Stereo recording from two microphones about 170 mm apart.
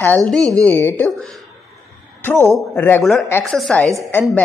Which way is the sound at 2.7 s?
10° left (ahead or behind).